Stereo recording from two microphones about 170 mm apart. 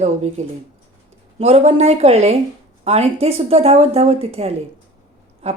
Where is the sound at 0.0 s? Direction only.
40° right (ahead or behind).